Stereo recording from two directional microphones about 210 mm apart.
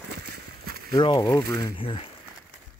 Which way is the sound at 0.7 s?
45° right (ahead or behind).